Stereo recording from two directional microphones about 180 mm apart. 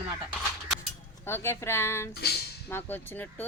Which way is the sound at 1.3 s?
15° left (ahead or behind).